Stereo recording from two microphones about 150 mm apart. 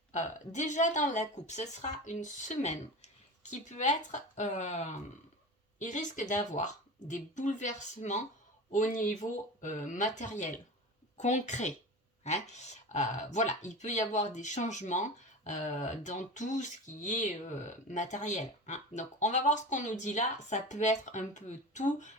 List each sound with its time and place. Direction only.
0.1 s speech: 50° left (ahead or behind)